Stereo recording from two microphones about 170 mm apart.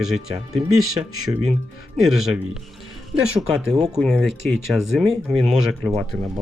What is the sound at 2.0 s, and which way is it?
Speech, 5° right (ahead or behind).